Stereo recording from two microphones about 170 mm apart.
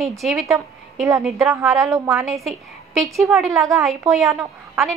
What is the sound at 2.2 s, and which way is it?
A woman's voice, centre (ahead or behind).